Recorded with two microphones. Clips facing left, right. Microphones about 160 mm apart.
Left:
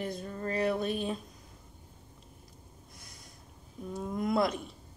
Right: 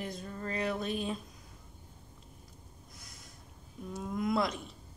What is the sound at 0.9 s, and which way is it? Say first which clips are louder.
Speech: left 2 dB; 35° left (ahead or behind).